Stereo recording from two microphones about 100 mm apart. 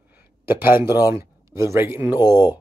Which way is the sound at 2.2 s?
45° left (ahead or behind).